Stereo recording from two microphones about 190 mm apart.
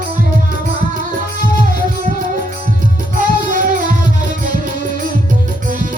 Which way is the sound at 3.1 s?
45° right (ahead or behind).